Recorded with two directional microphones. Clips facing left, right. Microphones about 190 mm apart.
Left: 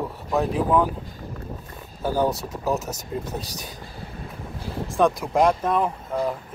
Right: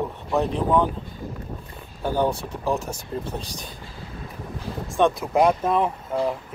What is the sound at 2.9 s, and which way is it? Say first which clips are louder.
Speech: even; 40° left (ahead or behind).